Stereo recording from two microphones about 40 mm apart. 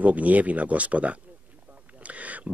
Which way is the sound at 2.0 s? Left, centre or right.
Right.